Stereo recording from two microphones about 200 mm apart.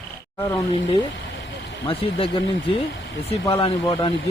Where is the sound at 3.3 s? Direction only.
25° left (ahead or behind).